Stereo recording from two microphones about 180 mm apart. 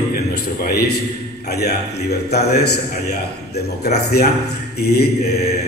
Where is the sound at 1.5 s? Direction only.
60° left (ahead or behind).